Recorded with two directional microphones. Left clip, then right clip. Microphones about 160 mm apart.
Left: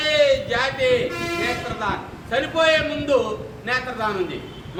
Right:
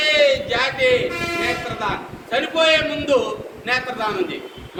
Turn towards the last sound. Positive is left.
turn(degrees=-10)  # may be behind; listen again after turning